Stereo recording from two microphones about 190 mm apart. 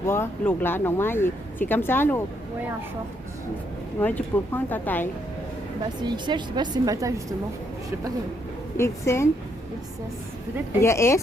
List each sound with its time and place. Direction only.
0.0 s speech: 15° left (ahead or behind)
4.0 s speech: 10° left (ahead or behind)
6.0 s a woman's voice: 25° right (ahead or behind)
8.8 s speech: 15° left (ahead or behind)
10.8 s speech: 15° left (ahead or behind)